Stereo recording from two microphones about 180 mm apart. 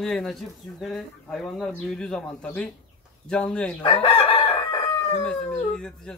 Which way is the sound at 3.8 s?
30° left (ahead or behind).